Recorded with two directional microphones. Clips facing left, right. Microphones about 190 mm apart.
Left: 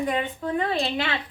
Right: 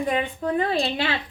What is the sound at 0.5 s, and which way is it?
Speech, 35° right (ahead or behind).